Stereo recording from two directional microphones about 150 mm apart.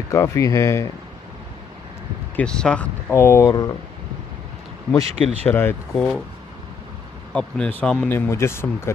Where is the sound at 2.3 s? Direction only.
5° left (ahead or behind).